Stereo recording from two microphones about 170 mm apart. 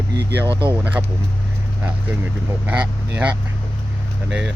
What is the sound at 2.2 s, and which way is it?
Speech, 10° right (ahead or behind).